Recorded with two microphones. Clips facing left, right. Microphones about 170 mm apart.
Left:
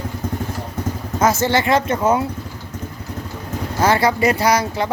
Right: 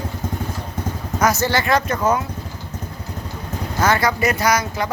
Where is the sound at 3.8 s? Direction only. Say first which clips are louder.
Left 2 dB; 30° left (ahead or behind).